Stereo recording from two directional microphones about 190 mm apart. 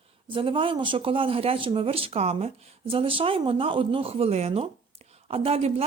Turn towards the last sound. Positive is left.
turn(degrees=-30)  # may be behind; listen again after turning